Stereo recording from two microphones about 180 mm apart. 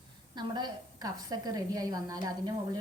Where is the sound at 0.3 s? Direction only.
25° right (ahead or behind).